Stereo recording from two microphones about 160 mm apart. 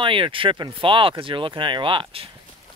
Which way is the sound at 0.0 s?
30° right (ahead or behind).